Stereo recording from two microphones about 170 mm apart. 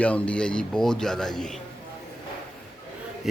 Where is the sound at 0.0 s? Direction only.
5° left (ahead or behind).